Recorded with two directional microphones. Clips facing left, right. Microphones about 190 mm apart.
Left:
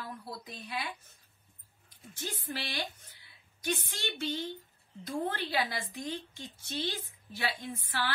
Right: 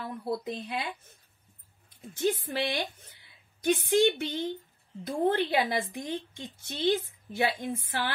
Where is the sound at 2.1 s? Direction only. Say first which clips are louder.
Right 11 dB; 20° right (ahead or behind).